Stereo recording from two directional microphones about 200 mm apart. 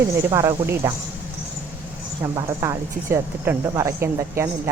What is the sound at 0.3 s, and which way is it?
Speech, 15° right (ahead or behind).